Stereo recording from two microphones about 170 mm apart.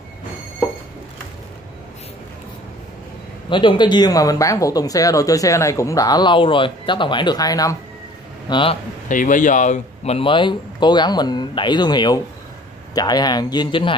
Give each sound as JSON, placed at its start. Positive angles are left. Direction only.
{"t": 3.4, "sound": "speech", "side_deg": 30}
{"t": 9.1, "sound": "speech", "side_deg": 50}